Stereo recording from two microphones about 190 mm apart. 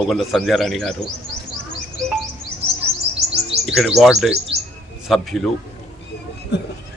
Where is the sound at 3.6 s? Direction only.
Centre (ahead or behind).